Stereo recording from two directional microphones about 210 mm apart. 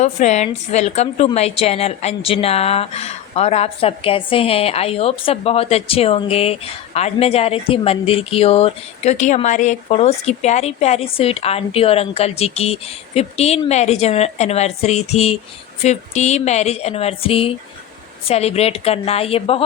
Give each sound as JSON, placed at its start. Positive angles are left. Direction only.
{"t": 0.0, "sound": "a woman's voice", "side_deg": 35}